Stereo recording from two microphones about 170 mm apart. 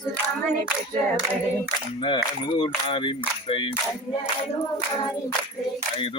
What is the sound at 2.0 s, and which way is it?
Speech, 30° left (ahead or behind).